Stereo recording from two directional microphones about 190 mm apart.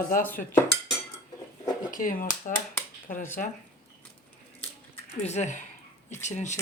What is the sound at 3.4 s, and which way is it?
Stir, 45° left (ahead or behind).